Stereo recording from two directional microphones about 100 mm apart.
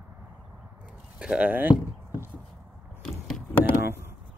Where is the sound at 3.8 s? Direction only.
25° right (ahead or behind).